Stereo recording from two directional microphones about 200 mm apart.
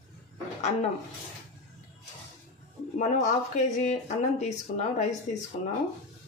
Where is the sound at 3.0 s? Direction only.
35° left (ahead or behind).